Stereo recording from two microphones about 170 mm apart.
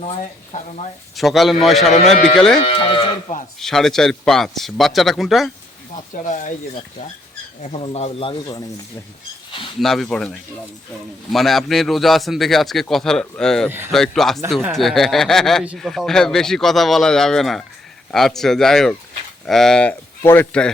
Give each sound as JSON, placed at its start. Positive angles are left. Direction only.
{"t": 1.1, "sound": "a man's voice", "side_deg": 0}
{"t": 2.6, "sound": "speech", "side_deg": 30}
{"t": 3.6, "sound": "a man's voice", "side_deg": 0}
{"t": 6.2, "sound": "speech", "side_deg": 45}
{"t": 7.6, "sound": "speech", "side_deg": 40}
{"t": 9.8, "sound": "a man's voice", "side_deg": 0}
{"t": 13.7, "sound": "speech", "side_deg": -15}
{"t": 13.9, "sound": "a man's voice", "side_deg": 0}